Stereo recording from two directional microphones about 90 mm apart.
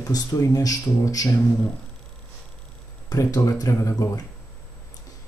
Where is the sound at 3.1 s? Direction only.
40° left (ahead or behind).